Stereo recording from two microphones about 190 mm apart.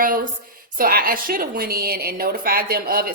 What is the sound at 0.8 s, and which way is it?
A woman's voice, 50° right (ahead or behind).